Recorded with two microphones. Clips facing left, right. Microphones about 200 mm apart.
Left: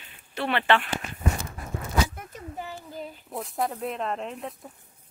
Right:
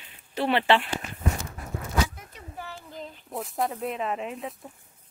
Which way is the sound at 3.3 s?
Centre (ahead or behind).